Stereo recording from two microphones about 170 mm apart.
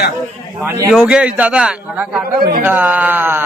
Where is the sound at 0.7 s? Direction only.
20° right (ahead or behind).